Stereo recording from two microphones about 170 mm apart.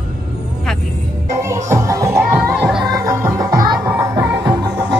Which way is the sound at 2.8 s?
15° right (ahead or behind).